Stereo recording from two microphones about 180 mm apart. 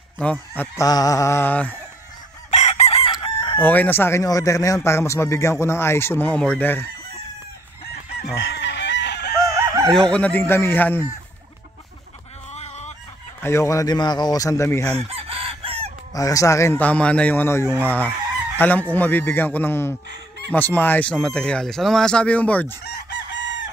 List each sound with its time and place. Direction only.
0.2 s speech: 10° left (ahead or behind)
2.5 s chicken: 35° left (ahead or behind)
3.6 s speech: 10° left (ahead or behind)
8.4 s chicken: 80° left
9.5 s chicken: 15° right (ahead or behind)
9.9 s speech: 5° left (ahead or behind)
12.5 s fowl: 40° left (ahead or behind)
13.4 s speech: 15° left (ahead or behind)
15.0 s chicken: 35° right (ahead or behind)
16.1 s speech: 20° left (ahead or behind)
22.8 s chicken: 70° left (ahead or behind); by 23.7 s 90° left